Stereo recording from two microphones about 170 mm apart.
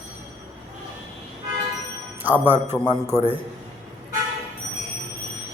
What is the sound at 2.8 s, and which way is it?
Speech, 25° left (ahead or behind).